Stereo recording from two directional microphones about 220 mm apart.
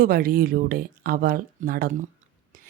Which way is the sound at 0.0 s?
40° right (ahead or behind).